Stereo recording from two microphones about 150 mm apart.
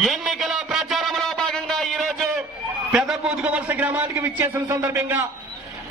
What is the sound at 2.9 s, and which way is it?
A man's voice, centre (ahead or behind).